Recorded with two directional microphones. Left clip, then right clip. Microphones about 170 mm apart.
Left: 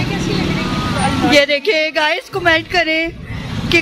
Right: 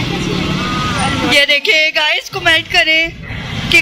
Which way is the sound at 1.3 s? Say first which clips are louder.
Right 3 dB; 35° left (ahead or behind).